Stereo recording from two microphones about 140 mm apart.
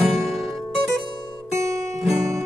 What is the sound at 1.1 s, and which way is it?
Music, 30° left (ahead or behind).